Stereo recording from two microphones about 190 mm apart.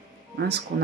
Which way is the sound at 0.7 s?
50° right (ahead or behind).